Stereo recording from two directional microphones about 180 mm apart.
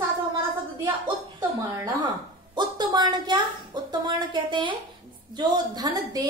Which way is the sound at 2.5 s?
25° right (ahead or behind).